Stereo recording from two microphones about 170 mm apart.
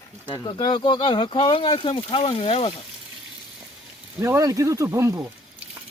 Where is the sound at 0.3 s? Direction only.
25° left (ahead or behind).